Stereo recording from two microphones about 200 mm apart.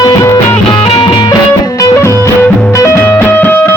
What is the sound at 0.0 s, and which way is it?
Music, 15° left (ahead or behind).